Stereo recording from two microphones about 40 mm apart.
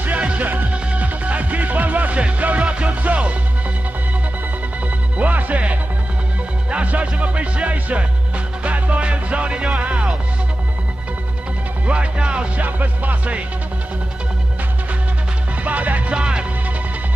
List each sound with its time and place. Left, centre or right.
0.2 s music: right
5.1 s music: right
11.8 s speech: right
12.5 s music: right
15.6 s music: right
16.1 s music: right